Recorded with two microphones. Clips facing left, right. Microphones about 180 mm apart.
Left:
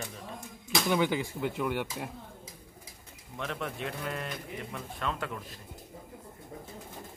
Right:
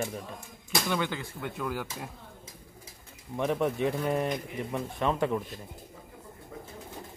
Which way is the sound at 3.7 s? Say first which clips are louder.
Right 8 dB; 55° right (ahead or behind).